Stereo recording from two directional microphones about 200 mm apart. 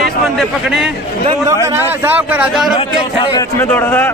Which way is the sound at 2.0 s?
10° right (ahead or behind).